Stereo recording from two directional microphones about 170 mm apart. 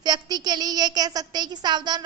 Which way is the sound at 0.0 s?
25° right (ahead or behind).